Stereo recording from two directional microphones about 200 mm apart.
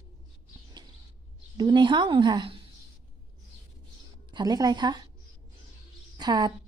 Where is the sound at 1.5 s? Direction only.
20° right (ahead or behind).